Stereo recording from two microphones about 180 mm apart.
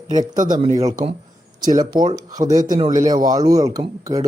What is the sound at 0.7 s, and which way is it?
Speech, 20° right (ahead or behind).